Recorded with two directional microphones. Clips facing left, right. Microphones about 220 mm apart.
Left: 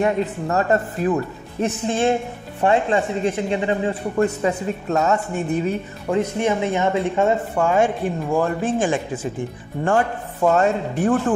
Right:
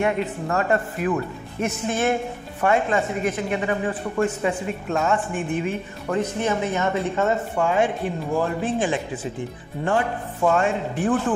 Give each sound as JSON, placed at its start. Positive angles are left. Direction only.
{"t": 0.0, "sound": "a woman's voice", "side_deg": 35}
{"t": 4.2, "sound": "a woman's voice", "side_deg": 40}
{"t": 6.0, "sound": "a woman's voice", "side_deg": 20}
{"t": 7.6, "sound": "a woman's voice", "side_deg": 45}